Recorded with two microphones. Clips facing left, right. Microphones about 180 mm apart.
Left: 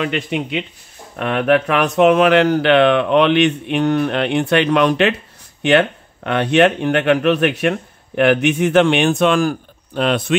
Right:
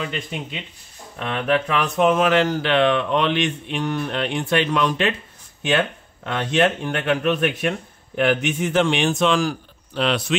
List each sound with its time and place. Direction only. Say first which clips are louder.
0.0 s speech: left 8 dB; 70° left (ahead or behind)
1.1 s speech: left 6 dB; 60° left (ahead or behind)